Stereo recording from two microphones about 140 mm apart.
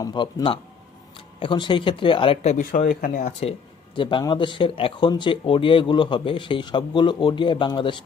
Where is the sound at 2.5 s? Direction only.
85° left.